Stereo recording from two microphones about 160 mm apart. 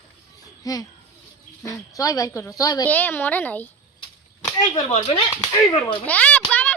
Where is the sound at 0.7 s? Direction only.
20° left (ahead or behind).